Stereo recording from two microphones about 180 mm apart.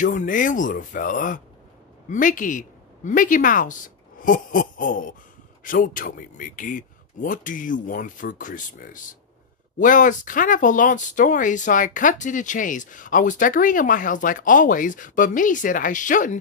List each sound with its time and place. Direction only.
0.0 s speech: 45° left (ahead or behind)